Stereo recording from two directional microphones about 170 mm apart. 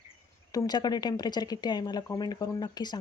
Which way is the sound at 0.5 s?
25° left (ahead or behind).